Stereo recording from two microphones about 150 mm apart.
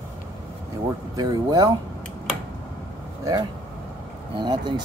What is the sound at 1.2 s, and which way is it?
Speech, 25° right (ahead or behind).